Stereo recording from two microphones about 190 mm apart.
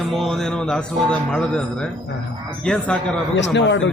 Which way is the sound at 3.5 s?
70° left (ahead or behind).